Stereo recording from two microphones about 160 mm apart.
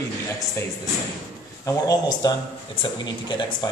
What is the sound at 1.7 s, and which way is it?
Speech, 20° left (ahead or behind).